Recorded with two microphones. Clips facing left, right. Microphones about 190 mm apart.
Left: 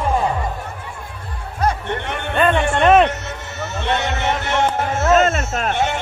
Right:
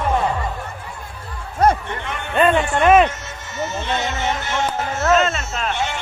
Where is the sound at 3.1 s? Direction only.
65° left (ahead or behind).